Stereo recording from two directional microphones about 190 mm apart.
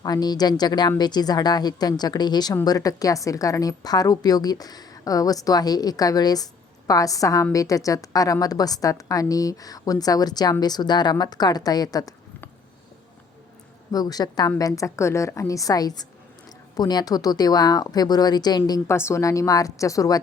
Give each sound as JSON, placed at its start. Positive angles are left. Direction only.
{"t": 0.0, "sound": "a woman's voice", "side_deg": 20}
{"t": 13.9, "sound": "a woman's voice", "side_deg": 20}